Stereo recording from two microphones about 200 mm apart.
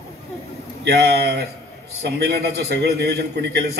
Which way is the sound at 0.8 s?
55° right (ahead or behind).